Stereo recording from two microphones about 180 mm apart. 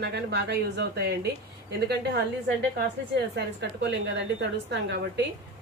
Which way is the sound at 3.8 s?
75° right (ahead or behind).